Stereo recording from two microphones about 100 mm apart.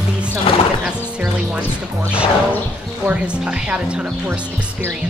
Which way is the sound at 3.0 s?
10° right (ahead or behind).